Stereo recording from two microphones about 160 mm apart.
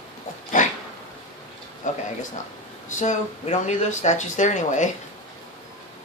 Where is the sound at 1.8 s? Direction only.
50° left (ahead or behind).